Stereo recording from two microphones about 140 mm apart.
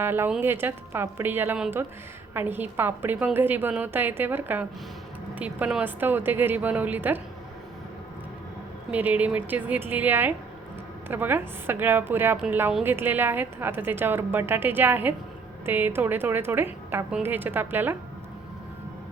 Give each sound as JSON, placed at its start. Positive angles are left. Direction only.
{"t": 0.0, "sound": "a woman's voice", "side_deg": -15}
{"t": 8.9, "sound": "a woman's voice", "side_deg": -10}